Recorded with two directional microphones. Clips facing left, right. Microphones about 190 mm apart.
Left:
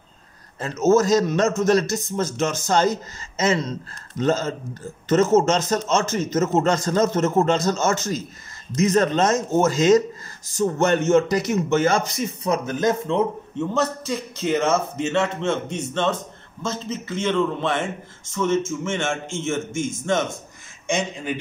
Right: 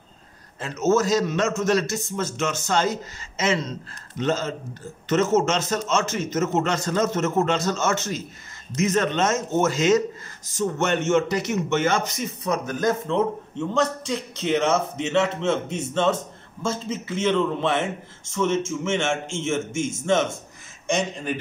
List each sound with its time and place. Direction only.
0.6 s a man's voice: 40° left (ahead or behind); by 21.4 s centre (ahead or behind)